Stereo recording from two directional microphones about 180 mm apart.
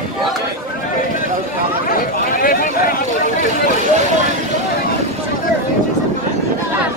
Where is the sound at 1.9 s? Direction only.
50° left (ahead or behind).